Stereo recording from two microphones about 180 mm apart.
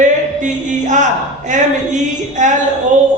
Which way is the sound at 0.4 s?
45° right (ahead or behind).